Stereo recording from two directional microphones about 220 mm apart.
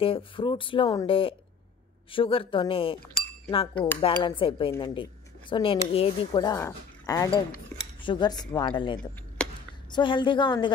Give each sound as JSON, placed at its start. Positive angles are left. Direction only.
{"t": 0.0, "sound": "speech", "side_deg": 25}